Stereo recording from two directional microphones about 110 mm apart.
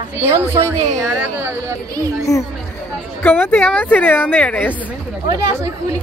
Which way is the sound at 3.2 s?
20° left (ahead or behind).